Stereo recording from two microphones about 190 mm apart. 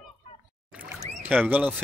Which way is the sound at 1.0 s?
35° right (ahead or behind).